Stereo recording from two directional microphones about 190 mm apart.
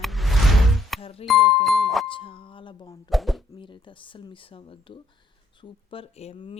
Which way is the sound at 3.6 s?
25° left (ahead or behind).